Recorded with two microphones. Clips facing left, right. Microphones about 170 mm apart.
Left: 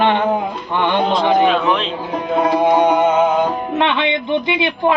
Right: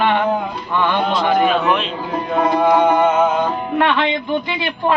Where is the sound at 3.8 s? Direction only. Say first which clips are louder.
Right 1 dB; 20° left (ahead or behind).